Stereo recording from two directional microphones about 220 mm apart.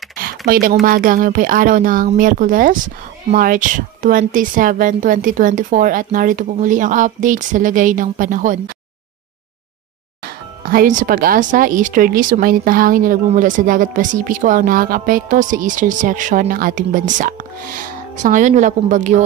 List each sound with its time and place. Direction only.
0.5 s speech: 40° right (ahead or behind)
10.2 s speech: 40° right (ahead or behind)